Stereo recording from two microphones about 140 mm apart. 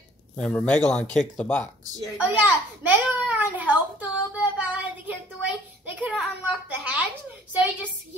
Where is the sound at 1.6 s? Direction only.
25° right (ahead or behind).